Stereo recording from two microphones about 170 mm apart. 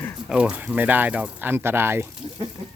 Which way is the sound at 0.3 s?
5° right (ahead or behind).